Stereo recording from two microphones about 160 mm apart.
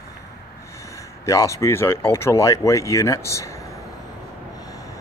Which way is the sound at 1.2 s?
20° left (ahead or behind).